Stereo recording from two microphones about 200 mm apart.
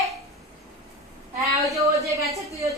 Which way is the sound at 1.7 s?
15° right (ahead or behind).